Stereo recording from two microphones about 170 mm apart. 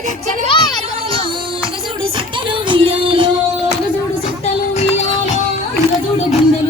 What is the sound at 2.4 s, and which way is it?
Music, 30° right (ahead or behind).